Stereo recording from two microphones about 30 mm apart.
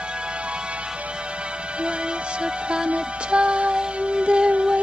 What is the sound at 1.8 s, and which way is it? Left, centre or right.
Music, right.